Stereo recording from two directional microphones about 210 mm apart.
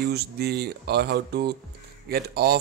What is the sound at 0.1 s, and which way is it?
Speech, 50° right (ahead or behind).